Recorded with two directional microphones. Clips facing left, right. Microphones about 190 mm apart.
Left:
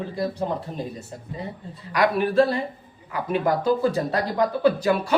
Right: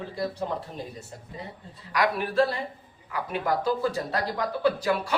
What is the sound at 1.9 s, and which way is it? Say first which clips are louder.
Speech: left 5 dB; 25° left (ahead or behind).